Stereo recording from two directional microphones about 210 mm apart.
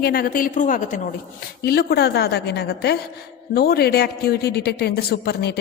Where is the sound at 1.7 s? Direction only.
50° left (ahead or behind).